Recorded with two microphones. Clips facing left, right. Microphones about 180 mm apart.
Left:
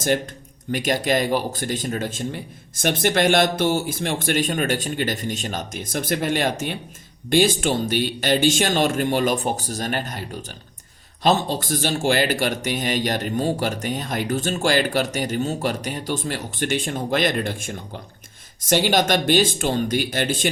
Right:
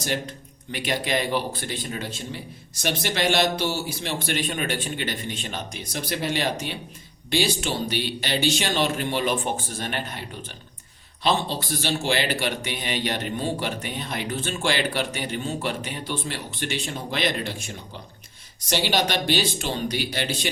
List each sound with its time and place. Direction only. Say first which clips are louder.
0.7 s a man's voice: left 5 dB; 45° left (ahead or behind)